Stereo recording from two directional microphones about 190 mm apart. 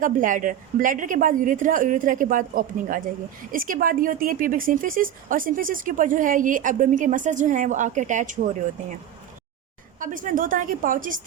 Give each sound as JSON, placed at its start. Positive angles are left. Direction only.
{"t": 0.0, "sound": "speech", "side_deg": -45}
{"t": 10.0, "sound": "speech", "side_deg": -45}